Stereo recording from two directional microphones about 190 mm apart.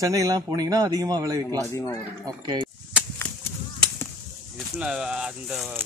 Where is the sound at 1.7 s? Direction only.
15° left (ahead or behind).